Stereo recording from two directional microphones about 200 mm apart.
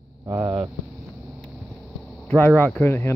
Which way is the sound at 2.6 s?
5° left (ahead or behind).